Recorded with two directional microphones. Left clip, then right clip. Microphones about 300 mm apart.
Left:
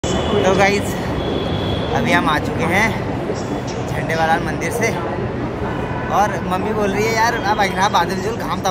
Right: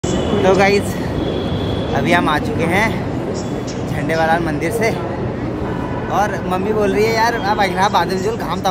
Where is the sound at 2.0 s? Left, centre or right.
Centre.